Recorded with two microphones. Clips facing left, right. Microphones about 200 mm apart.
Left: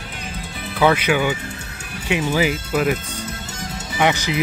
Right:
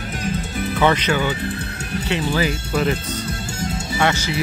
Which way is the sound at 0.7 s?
10° left (ahead or behind).